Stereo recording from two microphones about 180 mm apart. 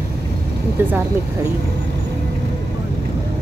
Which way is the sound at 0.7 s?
10° right (ahead or behind).